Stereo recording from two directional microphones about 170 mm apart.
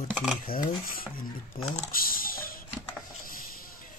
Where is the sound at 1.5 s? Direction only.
55° left (ahead or behind).